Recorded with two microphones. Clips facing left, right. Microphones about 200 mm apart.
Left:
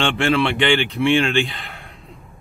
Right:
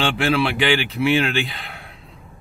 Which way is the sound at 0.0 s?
5° right (ahead or behind).